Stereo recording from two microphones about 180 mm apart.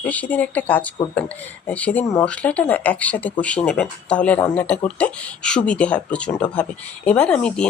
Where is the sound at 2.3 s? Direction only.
5° left (ahead or behind).